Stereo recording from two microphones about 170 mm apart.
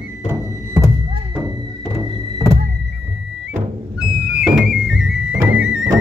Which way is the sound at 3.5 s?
5° right (ahead or behind).